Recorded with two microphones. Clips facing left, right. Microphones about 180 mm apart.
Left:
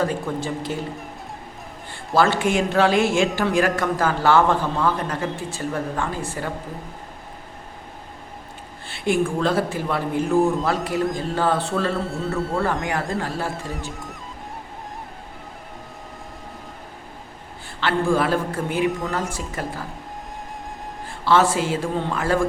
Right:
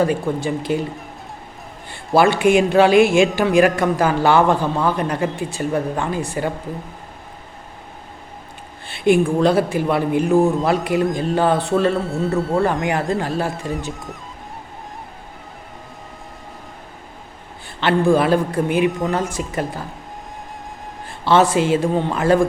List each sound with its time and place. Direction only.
0.0 s speech: 15° right (ahead or behind)
1.9 s speech: 15° right (ahead or behind)
8.9 s a woman's voice: 20° right (ahead or behind)
11.9 s a man's voice: centre (ahead or behind)
12.8 s a woman's voice: 20° right (ahead or behind)
17.7 s a woman's voice: 20° right (ahead or behind)
21.2 s a woman's voice: 20° right (ahead or behind)